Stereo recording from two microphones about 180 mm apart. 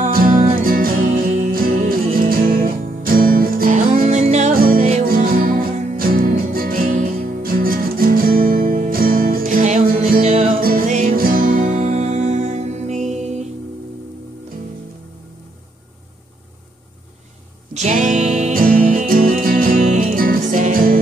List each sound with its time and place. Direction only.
0.0 s music: 50° right (ahead or behind)
4.0 s music: 40° right (ahead or behind)
17.7 s music: 40° right (ahead or behind)